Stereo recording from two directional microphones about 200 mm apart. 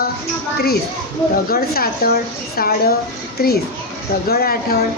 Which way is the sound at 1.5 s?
50° left (ahead or behind).